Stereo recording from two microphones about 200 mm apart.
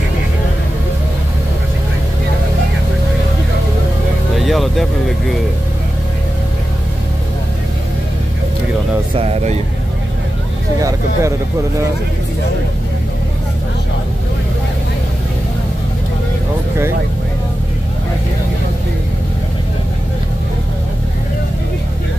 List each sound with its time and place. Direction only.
4.4 s vehicle: centre (ahead or behind)
9.1 s speech: 30° right (ahead or behind)
10.8 s speech: 15° right (ahead or behind)